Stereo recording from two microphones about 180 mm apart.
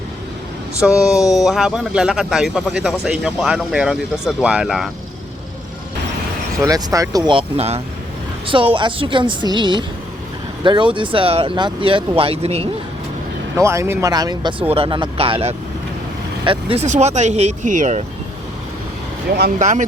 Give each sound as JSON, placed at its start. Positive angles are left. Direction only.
{"t": 1.0, "sound": "speech", "side_deg": 0}
{"t": 6.7, "sound": "speech", "side_deg": -20}
{"t": 13.6, "sound": "speech", "side_deg": -15}
{"t": 19.5, "sound": "speech", "side_deg": -45}